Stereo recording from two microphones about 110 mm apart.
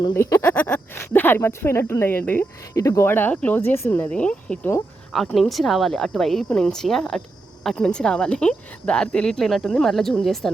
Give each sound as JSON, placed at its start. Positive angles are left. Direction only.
{"t": 0.1, "sound": "speech", "side_deg": 20}
{"t": 2.7, "sound": "speech", "side_deg": 30}